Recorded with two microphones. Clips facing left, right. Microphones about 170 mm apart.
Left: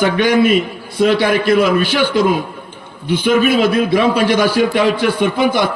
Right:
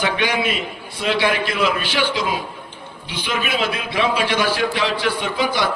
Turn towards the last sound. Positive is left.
turn(degrees=55)  # may be behind; listen again after turning